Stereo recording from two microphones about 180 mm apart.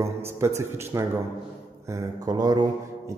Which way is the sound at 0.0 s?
15° right (ahead or behind).